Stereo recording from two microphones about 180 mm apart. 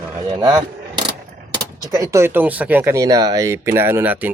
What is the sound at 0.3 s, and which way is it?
Speech, 20° right (ahead or behind).